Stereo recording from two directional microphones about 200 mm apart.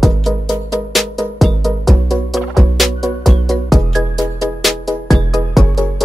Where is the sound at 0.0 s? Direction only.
Centre (ahead or behind).